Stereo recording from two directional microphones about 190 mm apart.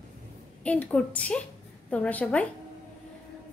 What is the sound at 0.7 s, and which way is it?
A woman's voice, 5° left (ahead or behind).